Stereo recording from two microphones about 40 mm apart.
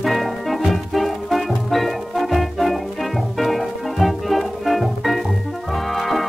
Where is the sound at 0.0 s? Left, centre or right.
Centre.